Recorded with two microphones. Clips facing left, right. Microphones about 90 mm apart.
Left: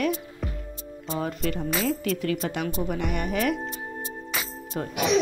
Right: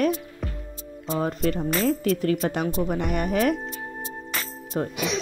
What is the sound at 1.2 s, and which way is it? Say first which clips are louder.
Speech: right 4 dB; 40° right (ahead or behind).